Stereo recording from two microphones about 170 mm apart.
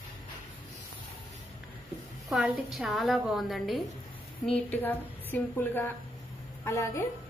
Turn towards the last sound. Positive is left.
turn(degrees=15)  # may be behind; listen again after turning